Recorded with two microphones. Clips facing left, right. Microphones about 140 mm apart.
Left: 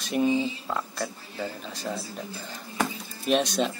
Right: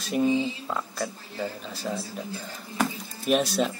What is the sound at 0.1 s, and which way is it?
Speech, 5° right (ahead or behind).